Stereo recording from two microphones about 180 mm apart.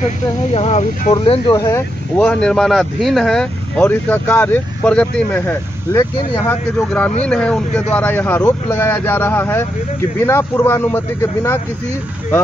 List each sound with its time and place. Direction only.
0.6 s speech: 40° left (ahead or behind)
1.2 s speech: 25° left (ahead or behind)